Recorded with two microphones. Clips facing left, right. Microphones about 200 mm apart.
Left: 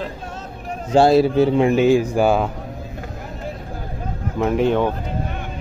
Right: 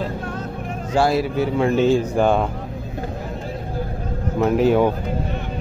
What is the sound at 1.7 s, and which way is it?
Speech, 10° left (ahead or behind).